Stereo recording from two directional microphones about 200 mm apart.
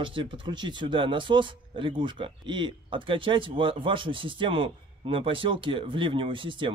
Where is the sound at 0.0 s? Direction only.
25° right (ahead or behind).